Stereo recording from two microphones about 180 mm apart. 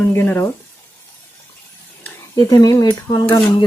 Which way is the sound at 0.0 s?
10° left (ahead or behind).